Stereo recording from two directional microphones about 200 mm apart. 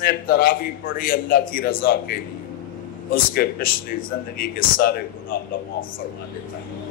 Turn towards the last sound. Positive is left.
turn(degrees=45)  # may be behind; listen again after turning